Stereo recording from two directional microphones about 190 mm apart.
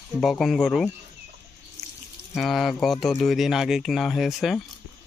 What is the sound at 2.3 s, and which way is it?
Speech, centre (ahead or behind).